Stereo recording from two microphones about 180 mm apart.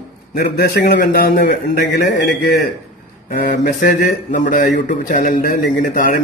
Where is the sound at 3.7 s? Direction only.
50° left (ahead or behind).